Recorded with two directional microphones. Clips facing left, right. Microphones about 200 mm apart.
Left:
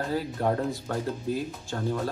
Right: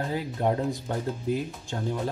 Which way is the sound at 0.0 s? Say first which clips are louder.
Even; 15° right (ahead or behind).